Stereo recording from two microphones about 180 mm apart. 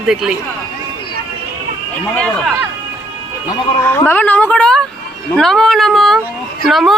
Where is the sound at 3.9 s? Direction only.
10° left (ahead or behind).